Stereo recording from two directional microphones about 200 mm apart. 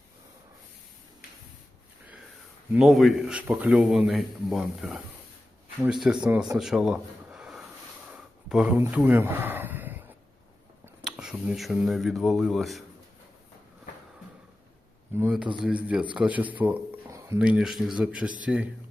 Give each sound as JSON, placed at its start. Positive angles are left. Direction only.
{"t": 2.7, "sound": "a man's voice", "side_deg": 0}
{"t": 6.6, "sound": "a sound", "side_deg": 0}
{"t": 10.8, "sound": "speech", "side_deg": -5}
{"t": 15.1, "sound": "a man's voice", "side_deg": -10}